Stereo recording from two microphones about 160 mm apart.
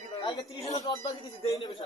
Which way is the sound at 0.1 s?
30° left (ahead or behind).